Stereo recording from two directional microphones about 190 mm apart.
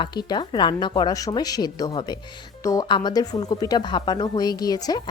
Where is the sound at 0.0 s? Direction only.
25° left (ahead or behind).